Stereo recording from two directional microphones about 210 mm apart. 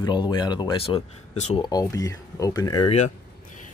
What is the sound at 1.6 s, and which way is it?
Speech, 20° left (ahead or behind).